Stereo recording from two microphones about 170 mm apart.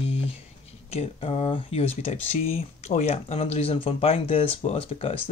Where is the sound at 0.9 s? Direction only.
35° left (ahead or behind).